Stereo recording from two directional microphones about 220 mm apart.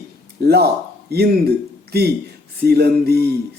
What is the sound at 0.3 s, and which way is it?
A man's voice, 45° right (ahead or behind).